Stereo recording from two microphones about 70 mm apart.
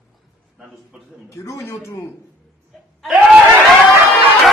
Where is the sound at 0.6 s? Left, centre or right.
Centre.